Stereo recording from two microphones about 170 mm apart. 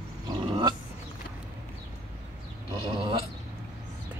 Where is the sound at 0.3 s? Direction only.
25° right (ahead or behind).